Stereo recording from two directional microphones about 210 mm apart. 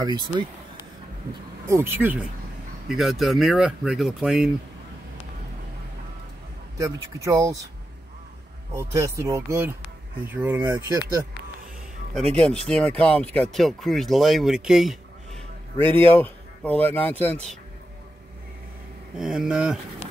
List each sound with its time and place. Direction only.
0.0 s speech: 20° right (ahead or behind)
1.7 s speech: 10° right (ahead or behind)
6.8 s speech: 15° right (ahead or behind)
8.7 s speech: 15° right (ahead or behind)
12.6 s speech: 5° left (ahead or behind)
19.1 s speech: 5° right (ahead or behind)